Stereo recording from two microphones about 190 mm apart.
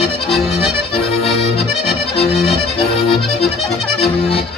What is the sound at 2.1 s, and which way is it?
Music, 30° left (ahead or behind).